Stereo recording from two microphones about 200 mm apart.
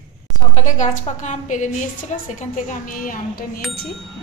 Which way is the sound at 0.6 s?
35° left (ahead or behind).